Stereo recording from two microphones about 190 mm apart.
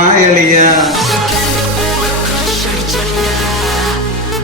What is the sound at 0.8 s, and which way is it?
Music, centre (ahead or behind).